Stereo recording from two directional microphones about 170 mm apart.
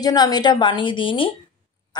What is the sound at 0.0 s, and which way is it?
Speech, 25° left (ahead or behind).